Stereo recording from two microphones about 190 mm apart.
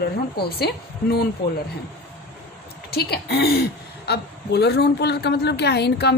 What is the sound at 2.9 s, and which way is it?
A woman's voice, 55° left (ahead or behind).